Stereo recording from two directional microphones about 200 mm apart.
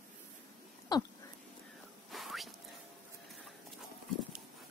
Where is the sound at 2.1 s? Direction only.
Centre (ahead or behind).